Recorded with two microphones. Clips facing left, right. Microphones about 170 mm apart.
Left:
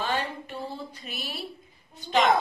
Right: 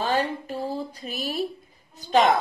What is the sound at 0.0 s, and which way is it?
A woman's voice, 35° right (ahead or behind).